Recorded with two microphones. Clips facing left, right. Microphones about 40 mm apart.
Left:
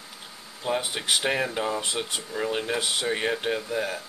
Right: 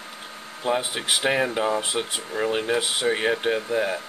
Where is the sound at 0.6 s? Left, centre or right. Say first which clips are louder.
Right 3 dB; centre.